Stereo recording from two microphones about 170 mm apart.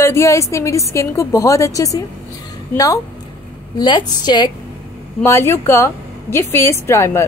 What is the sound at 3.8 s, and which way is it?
A woman's voice, 25° left (ahead or behind).